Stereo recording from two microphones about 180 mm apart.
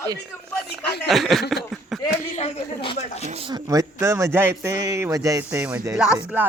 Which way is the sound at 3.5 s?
20° right (ahead or behind).